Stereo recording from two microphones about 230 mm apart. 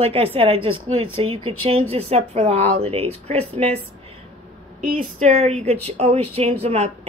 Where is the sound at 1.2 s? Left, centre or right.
Right.